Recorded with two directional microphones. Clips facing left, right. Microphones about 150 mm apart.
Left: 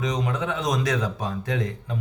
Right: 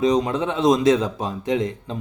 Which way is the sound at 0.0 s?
30° right (ahead or behind).